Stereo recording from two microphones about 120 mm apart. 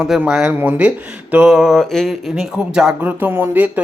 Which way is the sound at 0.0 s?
5° right (ahead or behind).